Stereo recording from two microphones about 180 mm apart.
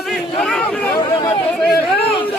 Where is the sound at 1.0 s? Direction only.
30° left (ahead or behind).